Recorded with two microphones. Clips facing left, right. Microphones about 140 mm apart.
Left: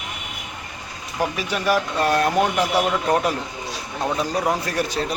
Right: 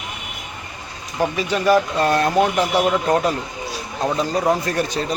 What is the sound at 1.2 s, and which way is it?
Speech, 5° left (ahead or behind).